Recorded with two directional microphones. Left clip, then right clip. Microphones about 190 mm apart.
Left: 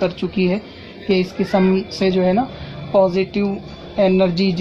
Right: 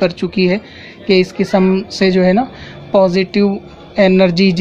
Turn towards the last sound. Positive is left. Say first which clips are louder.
# right 5 dB
turn(degrees=-25)  # may be behind; listen again after turning